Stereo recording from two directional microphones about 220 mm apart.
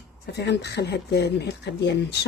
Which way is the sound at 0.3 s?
50° left (ahead or behind).